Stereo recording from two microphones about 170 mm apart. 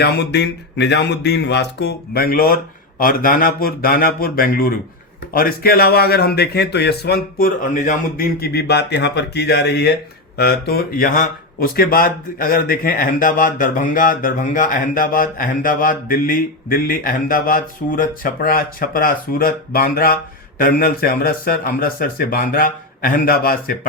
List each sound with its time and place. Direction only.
0.0 s a man's voice: 80° left; by 23.7 s 60° left (ahead or behind)